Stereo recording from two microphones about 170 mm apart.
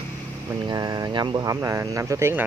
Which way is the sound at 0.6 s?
25° right (ahead or behind).